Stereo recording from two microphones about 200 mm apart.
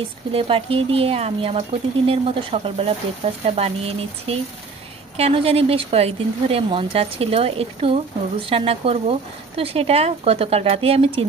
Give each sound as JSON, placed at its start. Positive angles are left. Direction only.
{"t": 0.3, "sound": "speech", "side_deg": -25}